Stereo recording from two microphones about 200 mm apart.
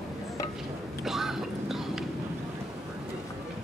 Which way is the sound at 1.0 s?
Centre (ahead or behind).